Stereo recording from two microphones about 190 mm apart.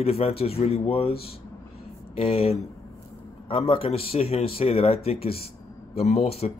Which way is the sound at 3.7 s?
30° left (ahead or behind).